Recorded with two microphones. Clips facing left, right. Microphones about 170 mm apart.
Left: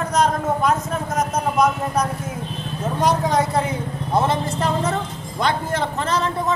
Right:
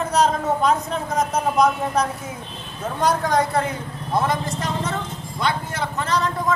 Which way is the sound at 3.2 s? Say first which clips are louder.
Left 1 dB; 5° left (ahead or behind).